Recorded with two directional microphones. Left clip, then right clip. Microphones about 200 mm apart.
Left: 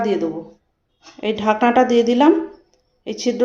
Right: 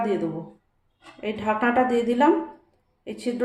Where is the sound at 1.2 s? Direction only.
45° left (ahead or behind).